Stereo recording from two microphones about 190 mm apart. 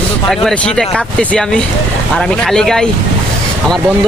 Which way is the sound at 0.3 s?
Centre (ahead or behind).